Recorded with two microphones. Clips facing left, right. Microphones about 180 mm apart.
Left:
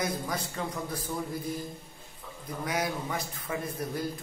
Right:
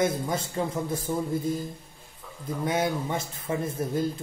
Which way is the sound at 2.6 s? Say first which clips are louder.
Right 5 dB; 25° right (ahead or behind).